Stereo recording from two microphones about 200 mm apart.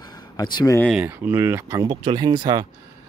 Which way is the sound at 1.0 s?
10° right (ahead or behind).